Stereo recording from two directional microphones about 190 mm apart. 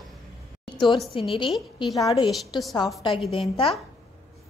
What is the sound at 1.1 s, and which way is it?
A woman's voice, 25° left (ahead or behind).